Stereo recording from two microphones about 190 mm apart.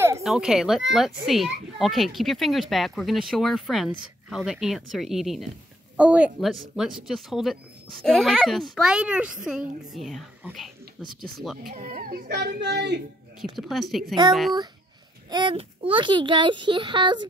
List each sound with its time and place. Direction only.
0.2 s speech: centre (ahead or behind)
11.7 s a child's voice: 50° right (ahead or behind)
13.4 s speech: centre (ahead or behind)
15.2 s a child's voice: 25° right (ahead or behind)